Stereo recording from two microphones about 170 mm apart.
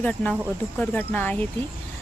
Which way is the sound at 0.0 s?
10° left (ahead or behind).